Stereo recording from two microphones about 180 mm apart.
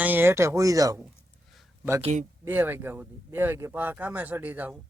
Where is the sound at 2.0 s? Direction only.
40° right (ahead or behind).